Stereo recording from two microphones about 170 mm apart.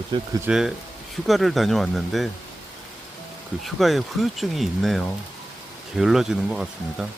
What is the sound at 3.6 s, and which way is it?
Speech, centre (ahead or behind).